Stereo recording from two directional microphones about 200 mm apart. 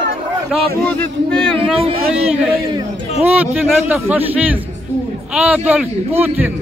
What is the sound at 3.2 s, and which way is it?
A man's voice, 5° right (ahead or behind).